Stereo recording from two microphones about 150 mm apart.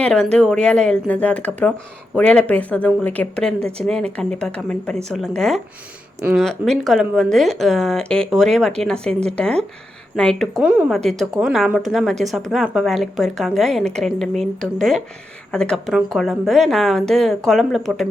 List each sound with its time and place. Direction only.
0.0 s a woman's voice: 5° left (ahead or behind)
10.6 s a woman's voice: 10° right (ahead or behind)